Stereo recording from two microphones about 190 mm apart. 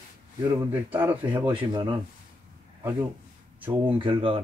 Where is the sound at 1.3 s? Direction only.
25° right (ahead or behind).